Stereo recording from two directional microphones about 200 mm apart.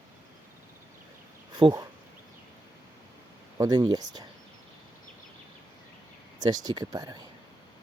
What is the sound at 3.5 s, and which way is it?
Speech, 20° right (ahead or behind).